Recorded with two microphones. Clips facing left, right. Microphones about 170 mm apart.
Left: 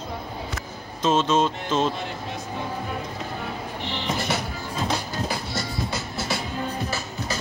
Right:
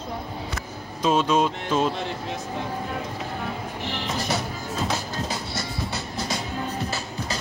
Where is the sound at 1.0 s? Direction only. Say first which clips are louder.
Even; 10° right (ahead or behind).